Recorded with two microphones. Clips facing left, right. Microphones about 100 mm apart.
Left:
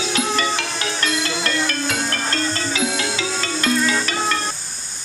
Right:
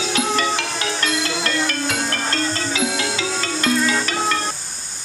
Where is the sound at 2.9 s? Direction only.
45° right (ahead or behind).